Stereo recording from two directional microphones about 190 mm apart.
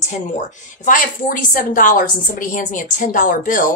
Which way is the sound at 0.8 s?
45° left (ahead or behind).